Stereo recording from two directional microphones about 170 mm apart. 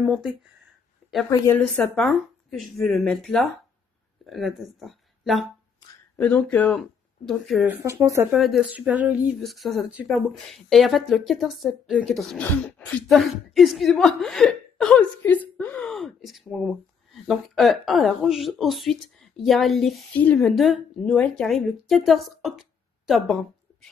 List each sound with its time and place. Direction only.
0.0 s a woman's voice: 10° right (ahead or behind)
1.3 s a woman's voice: 15° left (ahead or behind)
2.0 s speech: centre (ahead or behind)
7.6 s a woman's voice: 15° right (ahead or behind)
8.3 s a woman's voice: centre (ahead or behind)